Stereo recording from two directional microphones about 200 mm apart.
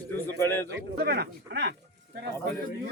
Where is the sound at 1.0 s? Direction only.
55° right (ahead or behind).